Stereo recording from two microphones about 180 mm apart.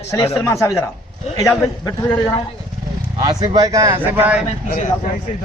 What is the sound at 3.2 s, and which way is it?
Speech, 20° right (ahead or behind).